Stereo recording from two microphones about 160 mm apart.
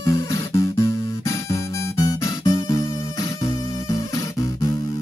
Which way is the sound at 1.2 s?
20° left (ahead or behind).